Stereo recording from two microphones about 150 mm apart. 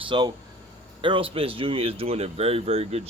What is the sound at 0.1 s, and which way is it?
Speech, 35° right (ahead or behind).